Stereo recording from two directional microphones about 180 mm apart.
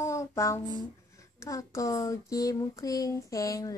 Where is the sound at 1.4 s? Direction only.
15° left (ahead or behind).